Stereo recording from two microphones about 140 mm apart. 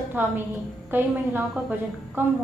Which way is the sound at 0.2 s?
15° right (ahead or behind).